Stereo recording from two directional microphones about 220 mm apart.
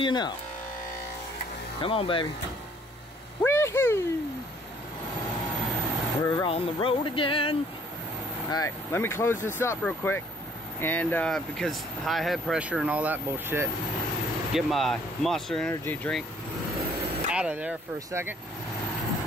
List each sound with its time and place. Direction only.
0.0 s speech: 20° left (ahead or behind)
1.8 s speech: 25° left (ahead or behind)
3.4 s a sound: 10° left (ahead or behind)
6.2 s speech: 15° left (ahead or behind)
6.5 s speech: 25° left (ahead or behind); by 16.3 s 5° left (ahead or behind)
17.3 s speech: 5° right (ahead or behind)